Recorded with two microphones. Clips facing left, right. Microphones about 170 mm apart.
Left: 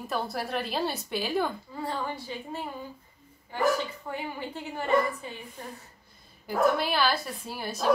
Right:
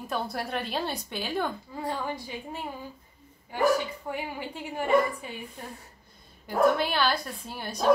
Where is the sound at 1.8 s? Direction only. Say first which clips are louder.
Right 1 dB; 15° right (ahead or behind).